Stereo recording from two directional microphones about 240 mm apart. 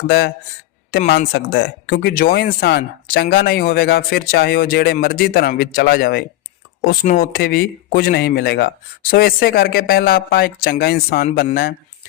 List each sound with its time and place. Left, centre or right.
0.1 s speech: left